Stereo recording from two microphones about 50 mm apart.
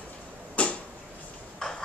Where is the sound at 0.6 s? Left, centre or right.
Left.